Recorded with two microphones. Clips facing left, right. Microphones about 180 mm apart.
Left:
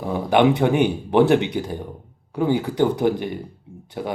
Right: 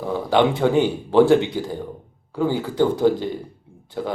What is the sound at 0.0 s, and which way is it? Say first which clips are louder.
Speech: left 1 dB; 20° left (ahead or behind).